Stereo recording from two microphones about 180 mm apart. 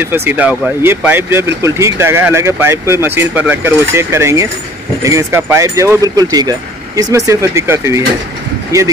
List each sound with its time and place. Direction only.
0.0 s speech: 10° right (ahead or behind)